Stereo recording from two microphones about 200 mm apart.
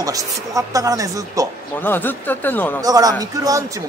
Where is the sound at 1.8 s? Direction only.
10° left (ahead or behind).